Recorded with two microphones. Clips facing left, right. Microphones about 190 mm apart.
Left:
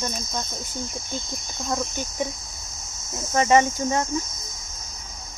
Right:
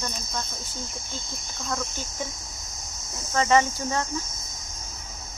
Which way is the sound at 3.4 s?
20° left (ahead or behind).